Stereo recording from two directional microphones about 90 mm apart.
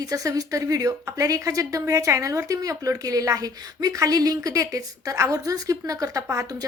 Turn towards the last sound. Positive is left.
turn(degrees=-40)  # may be behind; listen again after turning